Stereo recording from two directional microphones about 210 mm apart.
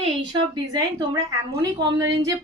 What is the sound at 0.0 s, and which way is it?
A woman's voice, 20° right (ahead or behind).